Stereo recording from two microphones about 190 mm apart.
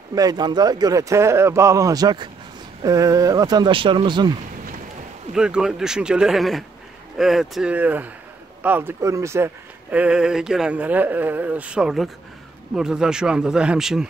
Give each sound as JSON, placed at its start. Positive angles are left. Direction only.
{"t": 0.1, "sound": "speech", "side_deg": -20}
{"t": 5.3, "sound": "speech", "side_deg": -5}